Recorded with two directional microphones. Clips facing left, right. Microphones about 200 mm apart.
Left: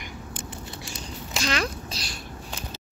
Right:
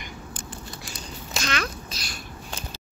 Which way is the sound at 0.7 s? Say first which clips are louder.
Left 1 dB; 25° left (ahead or behind).